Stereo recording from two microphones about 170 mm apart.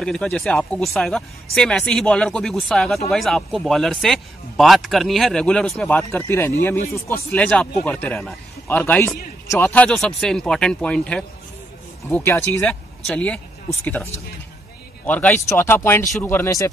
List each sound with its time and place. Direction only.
0.0 s a man's voice: 5° left (ahead or behind)
15.0 s a man's voice: 10° left (ahead or behind)